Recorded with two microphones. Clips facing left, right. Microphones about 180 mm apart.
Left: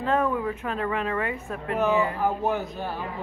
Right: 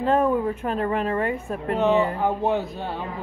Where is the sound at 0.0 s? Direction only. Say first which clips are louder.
Right 4 dB; 35° right (ahead or behind).